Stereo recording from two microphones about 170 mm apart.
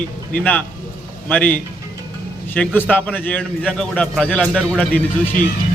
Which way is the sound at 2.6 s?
10° left (ahead or behind).